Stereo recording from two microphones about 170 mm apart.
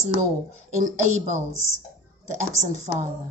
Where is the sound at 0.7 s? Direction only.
45° right (ahead or behind).